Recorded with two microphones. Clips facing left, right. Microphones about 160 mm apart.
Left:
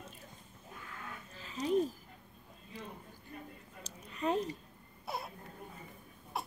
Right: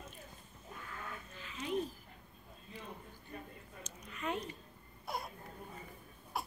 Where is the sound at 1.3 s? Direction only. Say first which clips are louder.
Left 6 dB; 35° left (ahead or behind).